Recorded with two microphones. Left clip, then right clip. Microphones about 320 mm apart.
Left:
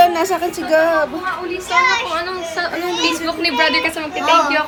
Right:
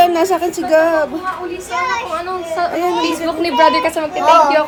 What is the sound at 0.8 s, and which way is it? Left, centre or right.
Speech, centre.